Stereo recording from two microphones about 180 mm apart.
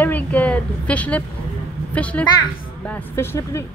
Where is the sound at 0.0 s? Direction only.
10° left (ahead or behind).